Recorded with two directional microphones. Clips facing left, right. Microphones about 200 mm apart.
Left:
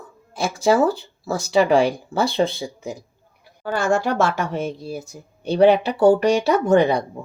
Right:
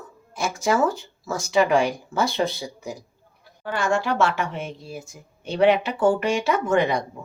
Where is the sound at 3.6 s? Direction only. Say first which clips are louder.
Left 3 dB; 45° left (ahead or behind).